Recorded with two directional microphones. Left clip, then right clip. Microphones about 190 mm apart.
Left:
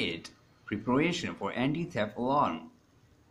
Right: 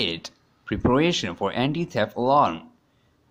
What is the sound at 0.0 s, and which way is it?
Speech, 50° right (ahead or behind).